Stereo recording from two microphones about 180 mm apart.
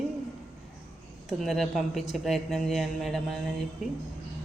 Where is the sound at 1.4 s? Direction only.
Centre (ahead or behind).